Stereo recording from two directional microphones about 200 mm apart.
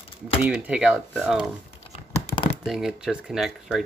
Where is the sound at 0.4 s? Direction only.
5° right (ahead or behind).